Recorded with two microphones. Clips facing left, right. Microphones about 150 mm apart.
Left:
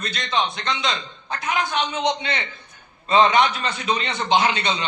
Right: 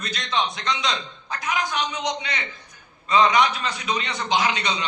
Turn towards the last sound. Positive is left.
turn(degrees=30)  # may be behind; listen again after turning